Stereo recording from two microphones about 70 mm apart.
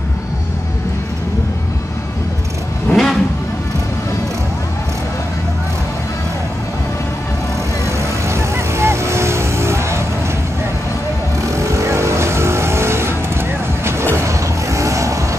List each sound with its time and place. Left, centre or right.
2.9 s vehicle: centre
7.8 s vehicle: right
11.5 s vehicle: right
14.1 s vehicle: right